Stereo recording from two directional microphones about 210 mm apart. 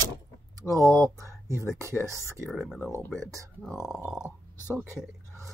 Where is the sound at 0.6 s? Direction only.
15° right (ahead or behind).